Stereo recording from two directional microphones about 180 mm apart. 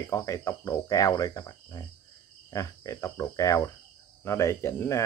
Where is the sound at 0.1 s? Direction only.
15° left (ahead or behind).